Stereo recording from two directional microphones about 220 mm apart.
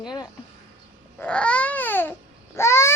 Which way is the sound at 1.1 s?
5° left (ahead or behind).